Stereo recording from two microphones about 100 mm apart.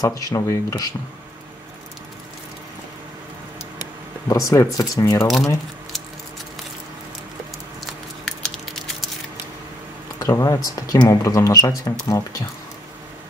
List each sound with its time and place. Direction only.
0.0 s speech: 35° left (ahead or behind)
4.3 s speech: 35° left (ahead or behind)
8.3 s a sound: 5° left (ahead or behind)
10.1 s speech: 35° left (ahead or behind)